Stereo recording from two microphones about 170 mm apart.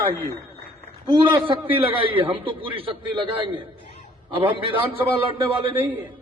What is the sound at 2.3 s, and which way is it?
A man's voice, 30° right (ahead or behind).